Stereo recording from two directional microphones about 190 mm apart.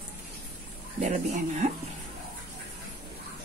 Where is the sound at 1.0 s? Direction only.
40° right (ahead or behind).